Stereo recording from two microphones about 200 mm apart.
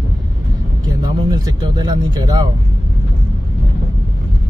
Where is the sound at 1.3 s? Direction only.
20° right (ahead or behind).